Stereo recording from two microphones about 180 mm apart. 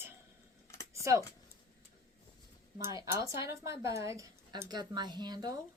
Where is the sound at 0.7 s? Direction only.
15° left (ahead or behind).